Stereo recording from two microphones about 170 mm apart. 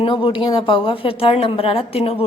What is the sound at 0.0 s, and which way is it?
A woman's voice, 30° left (ahead or behind).